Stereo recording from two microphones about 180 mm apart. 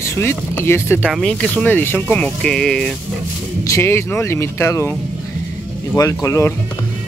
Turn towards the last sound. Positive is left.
turn(degrees=15)  # may be behind; listen again after turning